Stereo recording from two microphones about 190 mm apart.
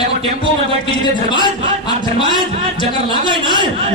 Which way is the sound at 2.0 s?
25° left (ahead or behind).